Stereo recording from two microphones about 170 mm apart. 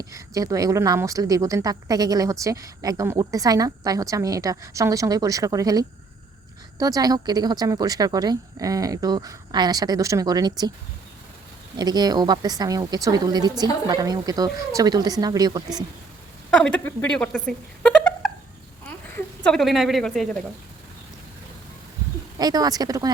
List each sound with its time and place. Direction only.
0.0 s speech: 20° right (ahead or behind)
11.8 s speech: 25° right (ahead or behind)
16.5 s speech: 5° left (ahead or behind)
19.5 s speech: centre (ahead or behind)
22.4 s speech: 25° right (ahead or behind)